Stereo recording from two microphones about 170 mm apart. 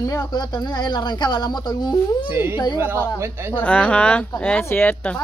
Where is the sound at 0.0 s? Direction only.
20° left (ahead or behind).